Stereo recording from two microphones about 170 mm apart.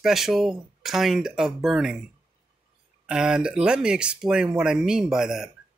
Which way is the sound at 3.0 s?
5° right (ahead or behind).